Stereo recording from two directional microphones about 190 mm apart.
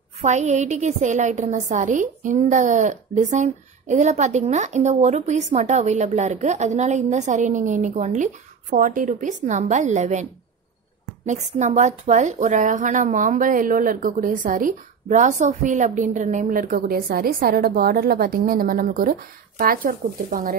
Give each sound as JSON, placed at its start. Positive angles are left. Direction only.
{"t": 0.2, "sound": "a woman's voice", "side_deg": -35}
{"t": 11.2, "sound": "a woman's voice", "side_deg": -40}